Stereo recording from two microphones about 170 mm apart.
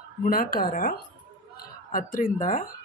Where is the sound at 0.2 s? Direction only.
55° left (ahead or behind).